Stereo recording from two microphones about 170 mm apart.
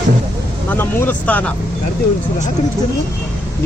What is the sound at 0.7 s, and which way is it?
Speech, 10° left (ahead or behind).